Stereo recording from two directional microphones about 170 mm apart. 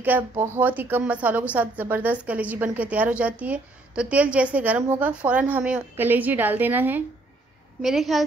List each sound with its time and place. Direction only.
0.0 s a woman's voice: 10° right (ahead or behind)